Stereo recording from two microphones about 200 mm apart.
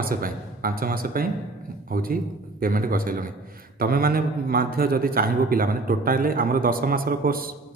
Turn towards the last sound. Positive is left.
turn(degrees=-45)  # may be behind; listen again after turning